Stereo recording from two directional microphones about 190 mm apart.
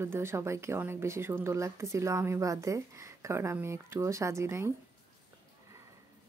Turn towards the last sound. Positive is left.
turn(degrees=-15)  # may be behind; listen again after turning